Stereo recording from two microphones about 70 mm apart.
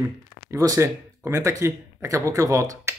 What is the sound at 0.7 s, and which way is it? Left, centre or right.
Speech, right.